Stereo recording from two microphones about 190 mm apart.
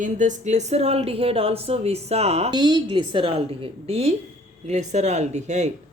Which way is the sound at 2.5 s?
25° right (ahead or behind).